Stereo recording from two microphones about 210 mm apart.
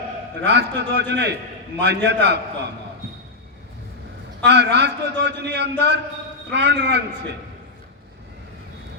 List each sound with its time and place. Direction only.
0.4 s a man's voice: 55° right (ahead or behind)
4.4 s a man's voice: 55° right (ahead or behind)